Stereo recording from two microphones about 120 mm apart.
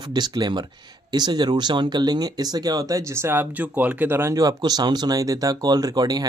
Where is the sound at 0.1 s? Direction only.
35° right (ahead or behind).